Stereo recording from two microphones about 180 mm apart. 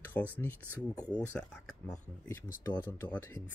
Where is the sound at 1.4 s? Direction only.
5° left (ahead or behind).